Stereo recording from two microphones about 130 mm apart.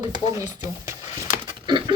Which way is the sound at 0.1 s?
25° right (ahead or behind).